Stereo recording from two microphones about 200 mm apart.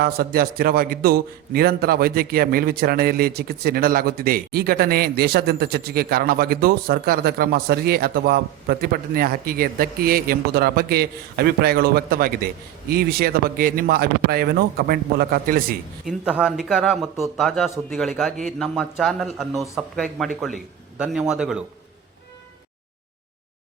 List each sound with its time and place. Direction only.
0.0 s a man's voice: 50° right (ahead or behind)
16.0 s a man's voice: 5° right (ahead or behind)